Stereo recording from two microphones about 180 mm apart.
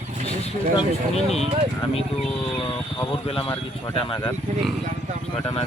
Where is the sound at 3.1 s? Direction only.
30° left (ahead or behind).